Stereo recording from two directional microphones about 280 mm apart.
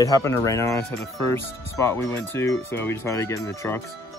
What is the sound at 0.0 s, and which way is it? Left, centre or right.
Speech, centre.